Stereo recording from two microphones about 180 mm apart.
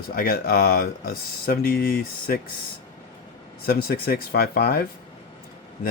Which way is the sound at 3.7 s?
55° left (ahead or behind).